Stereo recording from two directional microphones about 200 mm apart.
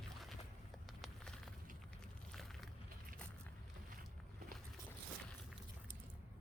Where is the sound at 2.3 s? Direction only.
Centre (ahead or behind).